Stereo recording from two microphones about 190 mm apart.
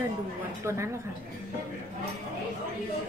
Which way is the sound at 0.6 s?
15° right (ahead or behind).